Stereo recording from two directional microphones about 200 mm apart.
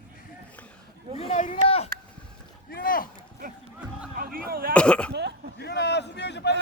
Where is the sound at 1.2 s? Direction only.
35° left (ahead or behind).